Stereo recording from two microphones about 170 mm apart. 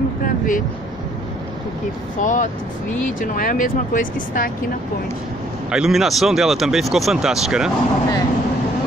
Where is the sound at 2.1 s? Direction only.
50° left (ahead or behind).